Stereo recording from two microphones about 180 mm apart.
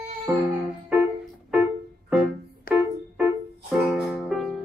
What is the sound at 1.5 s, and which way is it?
Music, 5° right (ahead or behind).